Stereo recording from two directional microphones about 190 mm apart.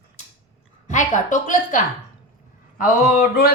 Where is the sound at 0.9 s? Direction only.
40° left (ahead or behind).